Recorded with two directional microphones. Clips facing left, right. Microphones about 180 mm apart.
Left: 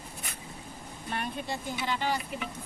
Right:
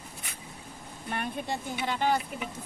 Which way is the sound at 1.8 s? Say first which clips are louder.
Right 4 dB; 50° right (ahead or behind).